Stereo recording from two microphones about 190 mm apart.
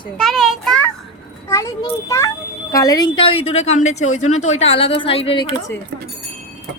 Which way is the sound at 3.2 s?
30° left (ahead or behind).